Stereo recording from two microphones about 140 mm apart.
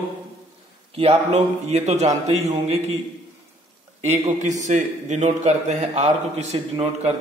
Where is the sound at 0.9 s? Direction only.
45° right (ahead or behind).